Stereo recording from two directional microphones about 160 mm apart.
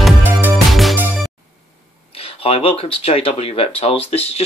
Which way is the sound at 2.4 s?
35° left (ahead or behind).